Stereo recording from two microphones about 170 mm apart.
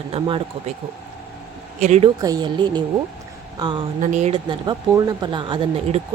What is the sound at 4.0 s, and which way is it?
Speech, 45° right (ahead or behind).